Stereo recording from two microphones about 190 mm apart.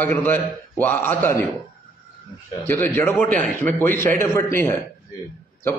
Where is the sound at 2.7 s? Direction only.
10° left (ahead or behind).